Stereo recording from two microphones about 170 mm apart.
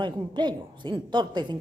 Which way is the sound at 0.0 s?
25° right (ahead or behind).